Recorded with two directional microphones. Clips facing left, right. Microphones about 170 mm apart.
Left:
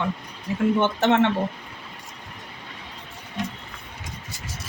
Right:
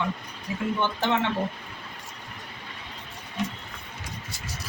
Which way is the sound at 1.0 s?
65° left (ahead or behind).